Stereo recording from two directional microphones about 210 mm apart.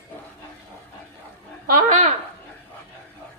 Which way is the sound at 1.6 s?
35° right (ahead or behind).